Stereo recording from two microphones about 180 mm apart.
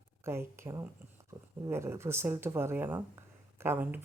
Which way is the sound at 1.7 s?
15° right (ahead or behind).